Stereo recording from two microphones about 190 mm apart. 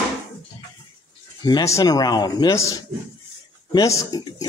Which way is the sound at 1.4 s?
20° left (ahead or behind).